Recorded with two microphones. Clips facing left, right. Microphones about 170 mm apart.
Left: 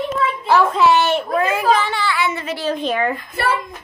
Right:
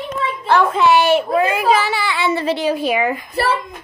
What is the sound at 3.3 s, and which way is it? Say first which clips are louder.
Speech: right 2 dB; 35° right (ahead or behind).